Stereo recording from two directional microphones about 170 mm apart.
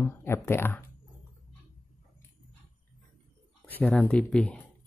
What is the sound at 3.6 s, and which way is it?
Speech, 10° left (ahead or behind).